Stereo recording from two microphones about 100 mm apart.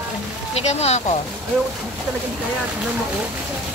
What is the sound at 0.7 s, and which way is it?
Speech, 90° left.